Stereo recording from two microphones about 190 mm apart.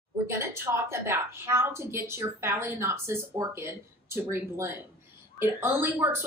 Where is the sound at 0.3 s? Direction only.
15° right (ahead or behind).